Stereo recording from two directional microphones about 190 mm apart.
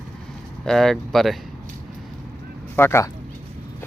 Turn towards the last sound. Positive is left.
turn(degrees=15)  # may be behind; listen again after turning